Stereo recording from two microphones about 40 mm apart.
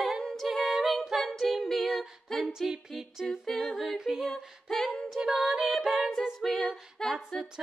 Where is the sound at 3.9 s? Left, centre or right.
Centre.